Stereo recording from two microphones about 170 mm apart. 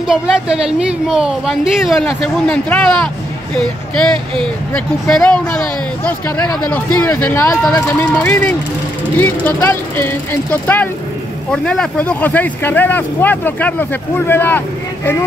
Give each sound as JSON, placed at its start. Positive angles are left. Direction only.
{"t": 0.1, "sound": "a woman's voice", "side_deg": -5}
{"t": 4.7, "sound": "a woman's voice", "side_deg": 5}
{"t": 6.4, "sound": "speech", "side_deg": 25}
{"t": 6.7, "sound": "speech", "side_deg": 10}